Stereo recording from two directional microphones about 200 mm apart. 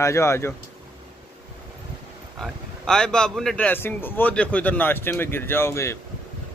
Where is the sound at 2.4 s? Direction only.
5° left (ahead or behind).